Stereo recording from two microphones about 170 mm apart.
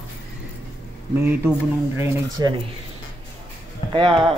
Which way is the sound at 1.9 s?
15° right (ahead or behind).